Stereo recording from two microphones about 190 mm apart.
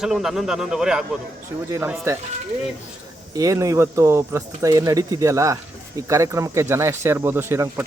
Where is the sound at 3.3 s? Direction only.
20° right (ahead or behind).